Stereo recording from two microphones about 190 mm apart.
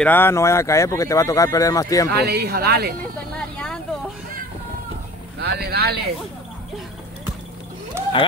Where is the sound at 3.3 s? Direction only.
5° left (ahead or behind).